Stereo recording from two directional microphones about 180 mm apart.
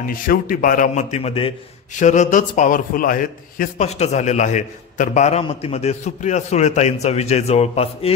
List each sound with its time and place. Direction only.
0.0 s a man's voice: 50° left (ahead or behind); by 8.1 s 35° left (ahead or behind)